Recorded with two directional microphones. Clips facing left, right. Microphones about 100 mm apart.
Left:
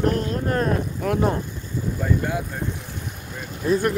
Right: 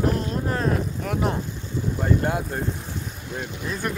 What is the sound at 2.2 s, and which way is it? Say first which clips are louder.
Speech: right 1 dB; 50° right (ahead or behind).